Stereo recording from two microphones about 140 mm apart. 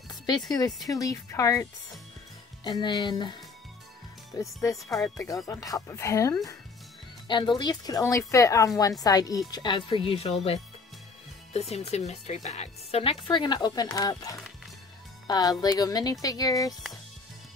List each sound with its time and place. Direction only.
0.8 s speech: 25° left (ahead or behind)
4.4 s speech: 20° left (ahead or behind)
4.7 s speech: centre (ahead or behind)
5.0 s speech: 25° left (ahead or behind)
7.2 s speech: 35° left (ahead or behind)